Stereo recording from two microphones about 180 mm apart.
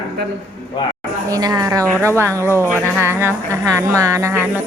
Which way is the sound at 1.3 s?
20° right (ahead or behind).